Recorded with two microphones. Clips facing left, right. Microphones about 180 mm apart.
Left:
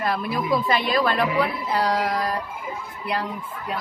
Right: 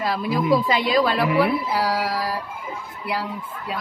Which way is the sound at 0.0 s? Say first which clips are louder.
Right 2 dB; 10° right (ahead or behind).